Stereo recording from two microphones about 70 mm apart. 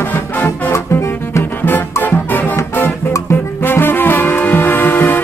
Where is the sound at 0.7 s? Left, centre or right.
Left.